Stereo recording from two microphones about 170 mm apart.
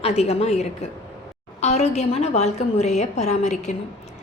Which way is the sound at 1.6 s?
40° left (ahead or behind).